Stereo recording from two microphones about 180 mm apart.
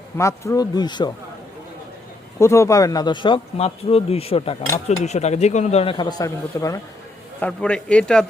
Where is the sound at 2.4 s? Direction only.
15° left (ahead or behind).